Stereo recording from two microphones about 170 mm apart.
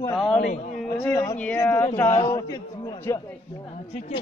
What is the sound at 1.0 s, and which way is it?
Speech, 20° left (ahead or behind).